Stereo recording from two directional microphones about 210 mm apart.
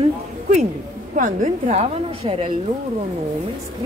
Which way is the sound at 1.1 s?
35° right (ahead or behind).